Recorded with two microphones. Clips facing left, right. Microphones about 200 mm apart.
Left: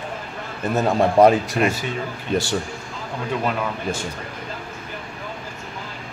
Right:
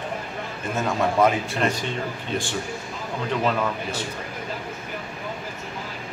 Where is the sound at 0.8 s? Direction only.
35° left (ahead or behind).